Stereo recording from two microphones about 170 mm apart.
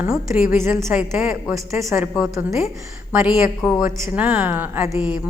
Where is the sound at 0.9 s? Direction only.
5° right (ahead or behind).